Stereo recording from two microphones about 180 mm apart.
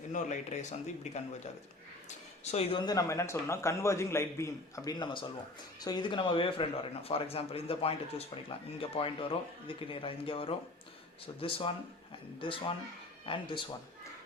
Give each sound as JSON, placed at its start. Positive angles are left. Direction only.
{"t": 0.1, "sound": "speech", "side_deg": 40}
{"t": 2.0, "sound": "a sound", "side_deg": 35}
{"t": 2.8, "sound": "a man's voice", "side_deg": 20}